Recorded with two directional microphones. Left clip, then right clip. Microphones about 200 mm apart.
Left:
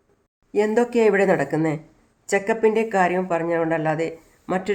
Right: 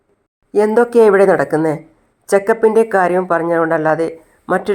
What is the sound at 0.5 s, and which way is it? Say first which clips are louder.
Speech: right 8 dB; 20° right (ahead or behind).